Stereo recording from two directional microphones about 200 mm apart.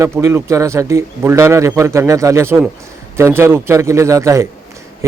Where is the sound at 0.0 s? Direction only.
15° right (ahead or behind).